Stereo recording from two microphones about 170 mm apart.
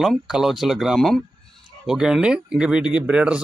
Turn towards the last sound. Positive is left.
turn(degrees=-5)  # may be behind; listen again after turning